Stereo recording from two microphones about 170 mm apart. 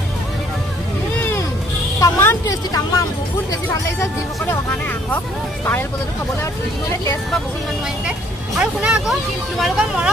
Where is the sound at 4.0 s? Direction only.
10° left (ahead or behind).